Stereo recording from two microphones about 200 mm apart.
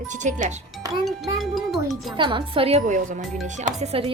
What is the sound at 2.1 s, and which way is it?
Speech, 25° right (ahead or behind).